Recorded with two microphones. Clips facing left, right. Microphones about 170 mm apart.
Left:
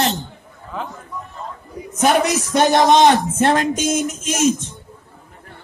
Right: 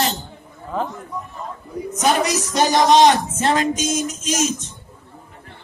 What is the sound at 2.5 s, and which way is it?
Speech, 60° left (ahead or behind).